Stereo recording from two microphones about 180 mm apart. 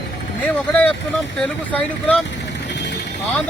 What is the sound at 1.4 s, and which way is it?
Speech, 5° left (ahead or behind).